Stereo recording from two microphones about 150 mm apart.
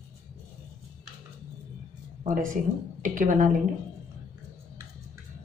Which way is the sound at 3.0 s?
60° right (ahead or behind).